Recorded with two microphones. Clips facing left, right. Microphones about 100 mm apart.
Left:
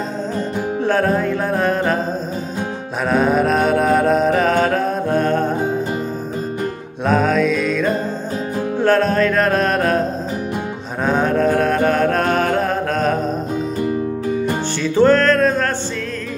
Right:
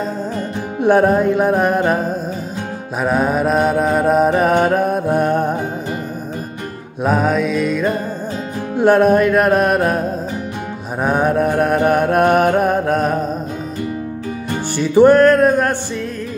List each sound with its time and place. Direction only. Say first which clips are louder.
0.7 s music: right 6 dB; 15° right (ahead or behind)
3.0 s mantra: even; 5° right (ahead or behind)
4.3 s music: right 2 dB; 15° right (ahead or behind)
7.1 s music: left 1 dB; 10° right (ahead or behind)
11.0 s mantra: right 1 dB; 15° right (ahead or behind)
14.8 s music: right 5 dB; 15° right (ahead or behind)